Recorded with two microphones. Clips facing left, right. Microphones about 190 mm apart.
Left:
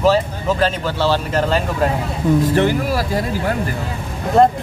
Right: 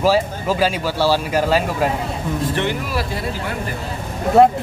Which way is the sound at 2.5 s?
40° left (ahead or behind).